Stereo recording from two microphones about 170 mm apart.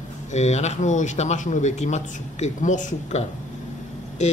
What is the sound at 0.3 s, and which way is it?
A man's voice, 40° left (ahead or behind).